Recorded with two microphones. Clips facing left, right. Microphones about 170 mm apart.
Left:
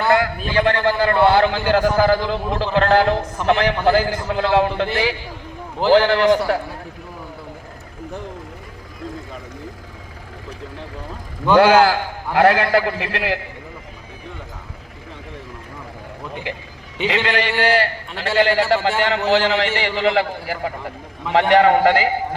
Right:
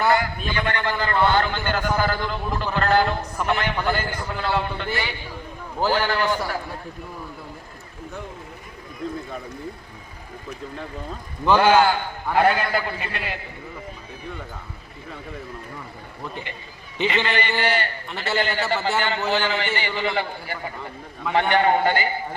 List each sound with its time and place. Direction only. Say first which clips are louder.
0.1 s a man's voice: left 4 dB; 75° left (ahead or behind); by 5.1 s 90° left
5.9 s a man's voice: left 11 dB; 80° left
11.5 s a man's voice: left 4 dB; 80° left
17.1 s a man's voice: left 4 dB; 80° left
19.3 s a man's voice: left 8 dB; 75° left (ahead or behind)